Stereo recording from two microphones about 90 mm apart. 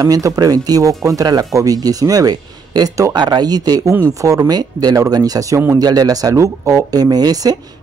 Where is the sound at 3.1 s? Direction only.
55° right (ahead or behind).